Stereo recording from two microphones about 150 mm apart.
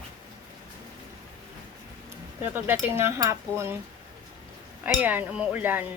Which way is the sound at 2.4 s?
15° right (ahead or behind).